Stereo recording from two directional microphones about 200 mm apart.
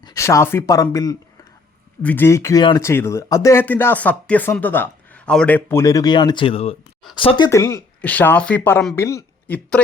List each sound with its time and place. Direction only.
0.0 s speech: 15° left (ahead or behind)